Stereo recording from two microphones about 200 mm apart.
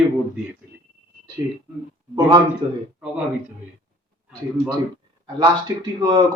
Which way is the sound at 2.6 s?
25° right (ahead or behind).